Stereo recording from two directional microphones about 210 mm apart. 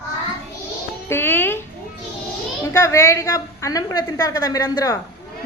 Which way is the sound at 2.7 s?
15° left (ahead or behind).